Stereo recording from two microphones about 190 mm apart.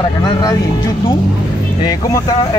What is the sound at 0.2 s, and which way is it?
Speech, 20° left (ahead or behind).